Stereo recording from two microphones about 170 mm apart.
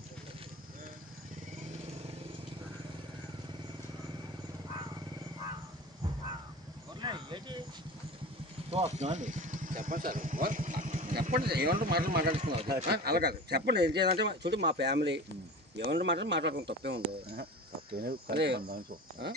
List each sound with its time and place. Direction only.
7.0 s a sound: 25° right (ahead or behind)
8.6 s speech: 40° right (ahead or behind)
11.2 s speech: 65° right (ahead or behind)
12.4 s a man's voice: 30° right (ahead or behind)
12.9 s speech: 70° right (ahead or behind)
18.3 s speech: 80° right; by 19.3 s 60° right (ahead or behind)